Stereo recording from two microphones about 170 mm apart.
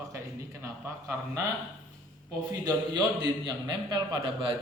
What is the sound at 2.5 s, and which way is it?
Speech, 20° right (ahead or behind).